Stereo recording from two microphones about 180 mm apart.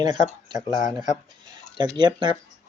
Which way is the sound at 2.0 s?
25° right (ahead or behind).